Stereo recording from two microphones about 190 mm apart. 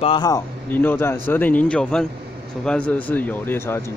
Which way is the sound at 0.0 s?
25° left (ahead or behind).